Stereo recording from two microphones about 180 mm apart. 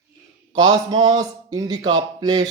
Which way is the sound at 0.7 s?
25° right (ahead or behind).